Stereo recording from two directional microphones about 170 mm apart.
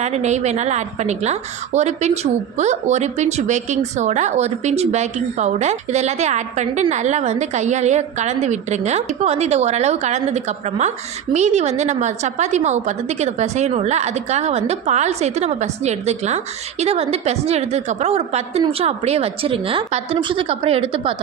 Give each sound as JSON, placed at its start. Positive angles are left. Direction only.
{"t": 0.0, "sound": "speech", "side_deg": -40}